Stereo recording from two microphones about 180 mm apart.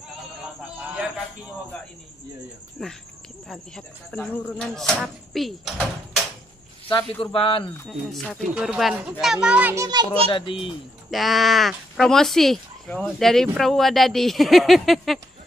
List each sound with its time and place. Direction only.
2.8 s speech: 5° left (ahead or behind)
6.9 s speech: 25° left (ahead or behind)
8.1 s speech: centre (ahead or behind)
9.8 s a child's voice: 25° right (ahead or behind)
10.3 s speech: 30° left (ahead or behind)
11.1 s speech: centre (ahead or behind)